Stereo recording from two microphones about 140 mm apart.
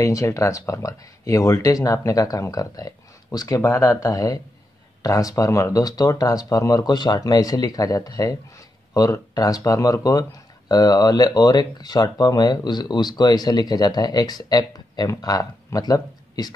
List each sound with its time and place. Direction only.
0.0 s speech: 25° left (ahead or behind)